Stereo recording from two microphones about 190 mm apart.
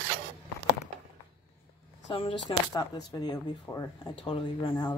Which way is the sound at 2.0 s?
30° left (ahead or behind).